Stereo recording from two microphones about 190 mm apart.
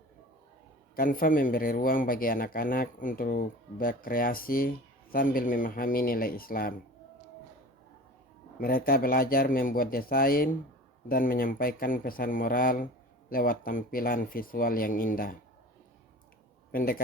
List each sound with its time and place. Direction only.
0.9 s speech: 50° left (ahead or behind)
8.5 s speech: 50° left (ahead or behind)
16.7 s speech: 50° left (ahead or behind)